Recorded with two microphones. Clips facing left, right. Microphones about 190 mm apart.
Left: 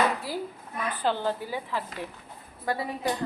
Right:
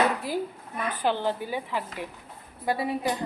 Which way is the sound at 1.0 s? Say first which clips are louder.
Right 1 dB; 15° right (ahead or behind).